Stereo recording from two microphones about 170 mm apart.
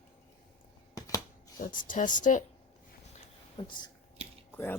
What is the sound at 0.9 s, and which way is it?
Scissors, 20° left (ahead or behind).